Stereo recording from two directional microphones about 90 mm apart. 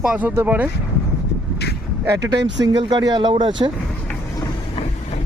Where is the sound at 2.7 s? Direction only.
50° right (ahead or behind).